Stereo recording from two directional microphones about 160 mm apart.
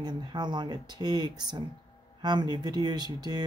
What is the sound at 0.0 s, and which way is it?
Speech, 25° right (ahead or behind).